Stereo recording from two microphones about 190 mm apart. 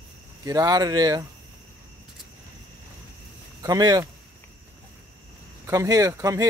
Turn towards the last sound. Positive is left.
turn(degrees=-20)  # may be behind; listen again after turning